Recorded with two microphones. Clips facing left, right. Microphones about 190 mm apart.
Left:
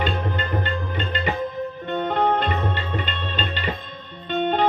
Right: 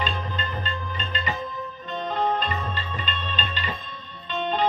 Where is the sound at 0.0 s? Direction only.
65° left (ahead or behind).